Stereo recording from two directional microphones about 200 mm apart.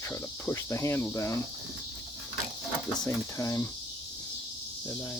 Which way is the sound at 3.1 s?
15° left (ahead or behind).